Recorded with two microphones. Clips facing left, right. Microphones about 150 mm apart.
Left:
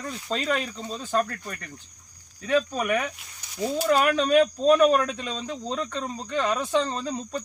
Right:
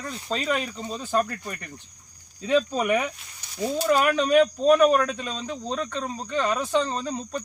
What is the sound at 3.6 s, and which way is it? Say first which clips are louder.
Cricket: even; centre (ahead or behind).